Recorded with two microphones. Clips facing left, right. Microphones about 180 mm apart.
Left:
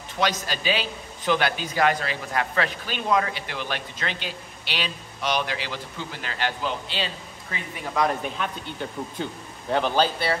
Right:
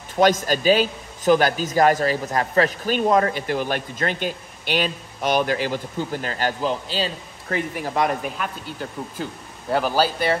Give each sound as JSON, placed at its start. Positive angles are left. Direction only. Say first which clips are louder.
{"t": 0.2, "sound": "a man's voice", "louder": "right 8 dB", "side_deg": -50}
{"t": 7.8, "sound": "speech", "louder": "even", "side_deg": -30}
{"t": 8.2, "sound": "a man's voice", "louder": "right 1 dB", "side_deg": -5}